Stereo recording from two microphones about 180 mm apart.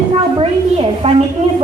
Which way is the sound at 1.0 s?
35° right (ahead or behind).